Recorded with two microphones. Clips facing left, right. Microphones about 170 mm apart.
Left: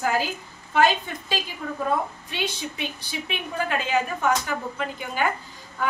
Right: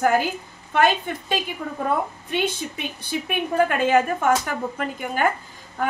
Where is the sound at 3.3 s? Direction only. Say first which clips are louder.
Right 6 dB; 55° right (ahead or behind).